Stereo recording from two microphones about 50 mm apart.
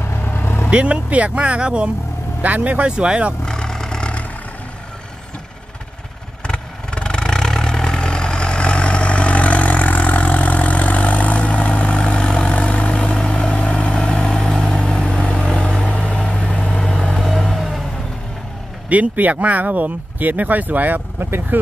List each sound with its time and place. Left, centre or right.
0.0 s vehicle: left
0.7 s speech: right
3.4 s vehicle: centre
6.4 s vehicle: centre
13.9 s vehicle: centre
17.2 s vehicle: centre
18.9 s speech: right